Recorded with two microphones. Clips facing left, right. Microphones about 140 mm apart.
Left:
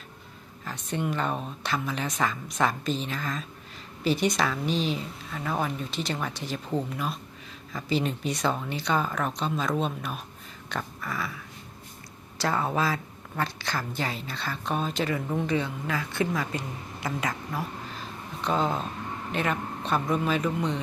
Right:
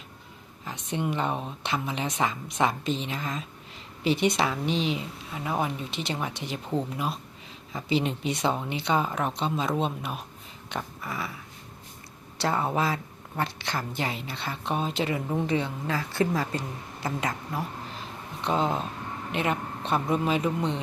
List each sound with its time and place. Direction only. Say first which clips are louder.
0.6 s speech: even; 20° right (ahead or behind)
10.7 s a sound: even; 20° right (ahead or behind)
12.4 s speech: even; 25° right (ahead or behind)